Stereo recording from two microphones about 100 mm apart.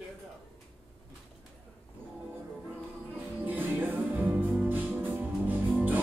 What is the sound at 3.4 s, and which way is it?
Music, 15° right (ahead or behind).